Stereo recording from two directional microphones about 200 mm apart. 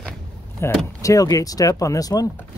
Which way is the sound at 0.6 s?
15° left (ahead or behind).